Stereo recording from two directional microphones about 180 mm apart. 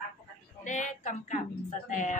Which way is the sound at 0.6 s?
45° left (ahead or behind).